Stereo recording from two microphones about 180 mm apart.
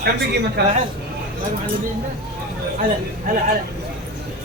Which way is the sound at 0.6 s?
65° right (ahead or behind).